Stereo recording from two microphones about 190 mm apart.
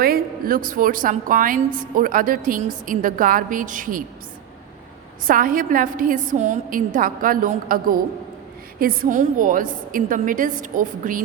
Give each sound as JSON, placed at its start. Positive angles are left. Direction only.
{"t": 0.0, "sound": "a woman's voice", "side_deg": -50}
{"t": 5.2, "sound": "a woman's voice", "side_deg": -45}